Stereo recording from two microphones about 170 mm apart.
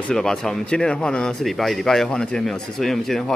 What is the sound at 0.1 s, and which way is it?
A man's voice, 5° left (ahead or behind).